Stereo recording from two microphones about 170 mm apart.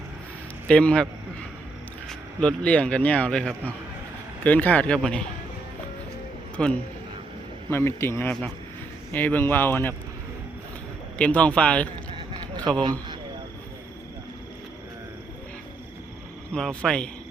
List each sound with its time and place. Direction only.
0.7 s speech: 5° left (ahead or behind)
2.0 s speech: 5° left (ahead or behind)
6.6 s speech: 5° left (ahead or behind)
11.2 s speech: 5° left (ahead or behind)
12.6 s speech: 25° right (ahead or behind)
16.5 s speech: 5° left (ahead or behind)